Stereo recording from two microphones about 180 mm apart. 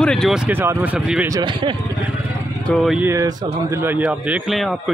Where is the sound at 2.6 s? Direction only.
Centre (ahead or behind).